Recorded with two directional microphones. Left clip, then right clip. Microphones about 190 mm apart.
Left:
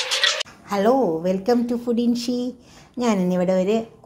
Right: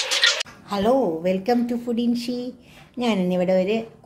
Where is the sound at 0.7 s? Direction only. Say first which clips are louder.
Left 2 dB; 25° left (ahead or behind).